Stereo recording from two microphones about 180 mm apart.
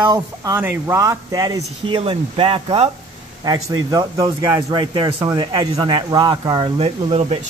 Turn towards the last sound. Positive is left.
turn(degrees=-35)  # may be behind; listen again after turning